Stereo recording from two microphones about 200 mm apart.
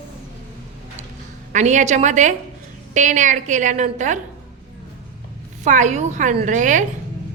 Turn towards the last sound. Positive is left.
turn(degrees=-40)  # may be behind; listen again after turning